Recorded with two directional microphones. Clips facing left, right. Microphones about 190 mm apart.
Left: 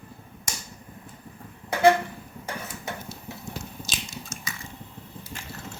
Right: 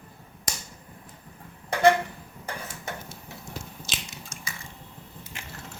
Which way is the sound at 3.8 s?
25° right (ahead or behind).